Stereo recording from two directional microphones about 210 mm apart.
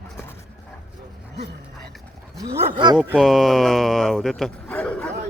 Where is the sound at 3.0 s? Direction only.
5° right (ahead or behind).